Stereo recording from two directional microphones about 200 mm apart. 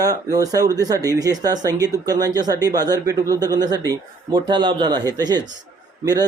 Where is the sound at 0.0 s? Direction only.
20° right (ahead or behind).